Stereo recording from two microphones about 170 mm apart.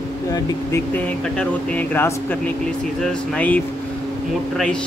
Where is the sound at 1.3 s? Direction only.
10° left (ahead or behind).